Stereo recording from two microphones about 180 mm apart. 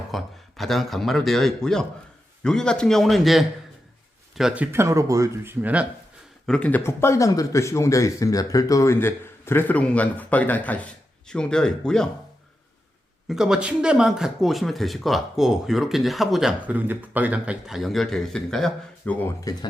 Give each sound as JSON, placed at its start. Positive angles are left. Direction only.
{"t": 0.1, "sound": "speech", "side_deg": 0}
{"t": 6.4, "sound": "speech", "side_deg": 5}
{"t": 13.2, "sound": "speech", "side_deg": -5}
{"t": 19.5, "sound": "speech", "side_deg": 20}